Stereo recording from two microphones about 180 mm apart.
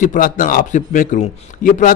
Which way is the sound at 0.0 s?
45° left (ahead or behind).